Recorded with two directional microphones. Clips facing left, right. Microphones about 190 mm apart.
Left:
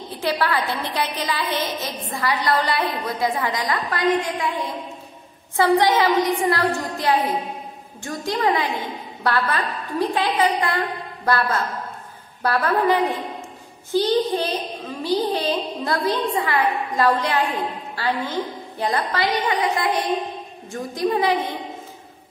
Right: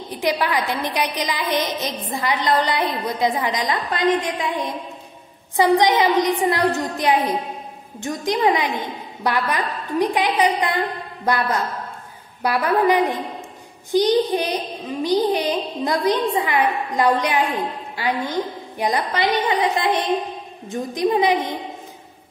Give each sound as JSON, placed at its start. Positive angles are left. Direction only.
{"t": 0.1, "sound": "a woman's voice", "side_deg": -15}